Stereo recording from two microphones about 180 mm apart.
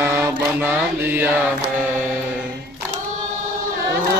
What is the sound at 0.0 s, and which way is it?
Mantra, 15° right (ahead or behind).